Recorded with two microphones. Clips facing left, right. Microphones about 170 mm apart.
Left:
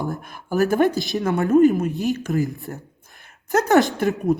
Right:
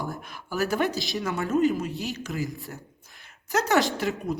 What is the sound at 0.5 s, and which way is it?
A man's voice, 45° left (ahead or behind).